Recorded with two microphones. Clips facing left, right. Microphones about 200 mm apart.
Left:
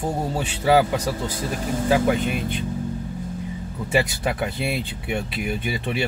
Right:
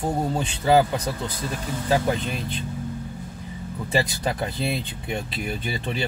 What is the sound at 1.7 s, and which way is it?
Speech, 45° left (ahead or behind).